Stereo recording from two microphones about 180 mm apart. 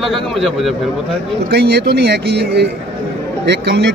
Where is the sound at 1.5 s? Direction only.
65° right (ahead or behind).